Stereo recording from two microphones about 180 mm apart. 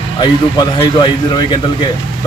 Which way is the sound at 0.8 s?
25° left (ahead or behind).